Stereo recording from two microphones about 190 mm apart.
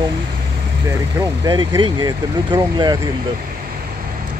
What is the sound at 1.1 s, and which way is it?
Speech, 20° right (ahead or behind).